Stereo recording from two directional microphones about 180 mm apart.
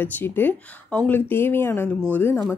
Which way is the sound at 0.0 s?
10° left (ahead or behind).